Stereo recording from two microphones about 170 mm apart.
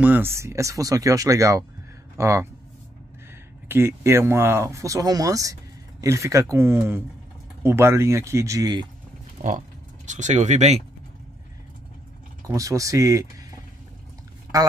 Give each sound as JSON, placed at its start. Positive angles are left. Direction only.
{"t": 0.0, "sound": "speech", "side_deg": -10}
{"t": 3.6, "sound": "speech", "side_deg": -15}
{"t": 9.4, "sound": "pig", "side_deg": -60}
{"t": 10.0, "sound": "speech", "side_deg": -45}
{"t": 12.4, "sound": "speech", "side_deg": -20}